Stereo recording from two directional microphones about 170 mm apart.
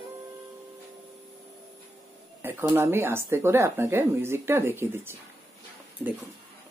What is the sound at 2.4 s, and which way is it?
Speech, 15° right (ahead or behind).